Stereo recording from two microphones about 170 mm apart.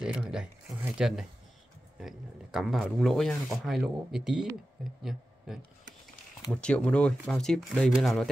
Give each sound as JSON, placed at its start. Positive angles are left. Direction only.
{"t": 0.0, "sound": "speech", "side_deg": -5}